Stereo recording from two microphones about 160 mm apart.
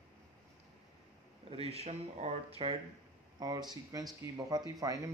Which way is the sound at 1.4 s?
40° right (ahead or behind).